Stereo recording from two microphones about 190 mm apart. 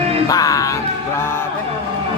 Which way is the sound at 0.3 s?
20° left (ahead or behind).